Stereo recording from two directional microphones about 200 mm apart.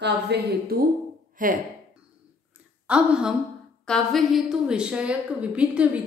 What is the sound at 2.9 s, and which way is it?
A woman's voice, 5° right (ahead or behind).